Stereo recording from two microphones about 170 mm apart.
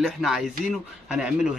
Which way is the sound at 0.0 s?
Centre (ahead or behind).